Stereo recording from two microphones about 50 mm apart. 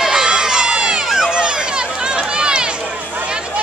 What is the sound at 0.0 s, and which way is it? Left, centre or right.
Crowd, centre.